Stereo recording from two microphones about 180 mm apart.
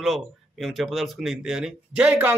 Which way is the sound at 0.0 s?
Centre (ahead or behind).